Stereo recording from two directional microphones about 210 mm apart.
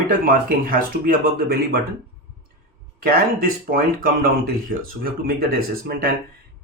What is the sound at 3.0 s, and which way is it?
Speech, 45° right (ahead or behind).